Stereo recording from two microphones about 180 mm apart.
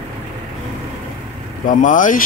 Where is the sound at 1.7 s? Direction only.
45° left (ahead or behind).